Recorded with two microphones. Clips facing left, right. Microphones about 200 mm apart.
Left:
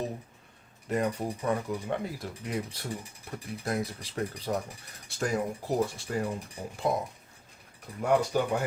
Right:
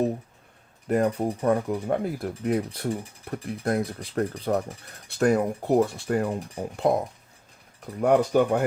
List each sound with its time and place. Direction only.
0.9 s speech: 50° right (ahead or behind)
8.0 s speech: 55° right (ahead or behind)